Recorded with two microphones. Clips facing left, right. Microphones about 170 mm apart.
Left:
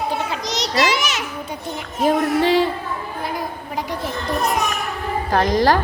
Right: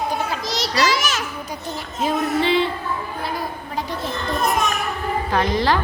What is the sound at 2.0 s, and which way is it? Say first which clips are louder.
Music: left 3 dB; 45° left (ahead or behind).